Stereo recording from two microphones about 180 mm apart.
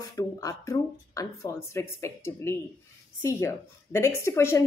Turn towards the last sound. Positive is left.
turn(degrees=15)  # may be behind; listen again after turning